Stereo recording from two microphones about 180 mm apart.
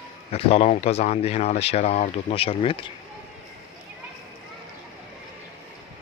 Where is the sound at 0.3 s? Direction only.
35° left (ahead or behind).